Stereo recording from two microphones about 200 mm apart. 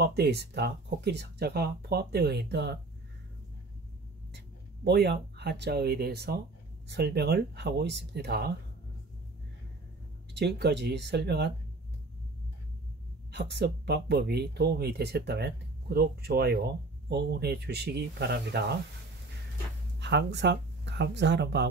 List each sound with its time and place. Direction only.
0.0 s speech: 55° right (ahead or behind)
4.8 s speech: 55° right (ahead or behind)
10.3 s speech: 55° right (ahead or behind)
13.3 s speech: 60° right (ahead or behind)
20.0 s speech: 60° right (ahead or behind)